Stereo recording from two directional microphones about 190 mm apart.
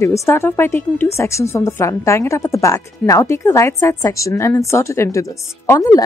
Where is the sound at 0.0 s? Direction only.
15° left (ahead or behind).